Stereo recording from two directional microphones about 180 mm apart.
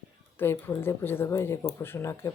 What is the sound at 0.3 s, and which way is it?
Speech, 15° left (ahead or behind).